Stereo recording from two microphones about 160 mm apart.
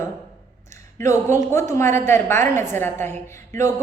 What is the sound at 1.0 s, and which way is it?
A woman's voice, 20° left (ahead or behind).